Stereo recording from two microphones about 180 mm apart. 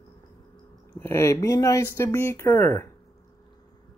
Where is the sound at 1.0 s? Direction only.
15° left (ahead or behind).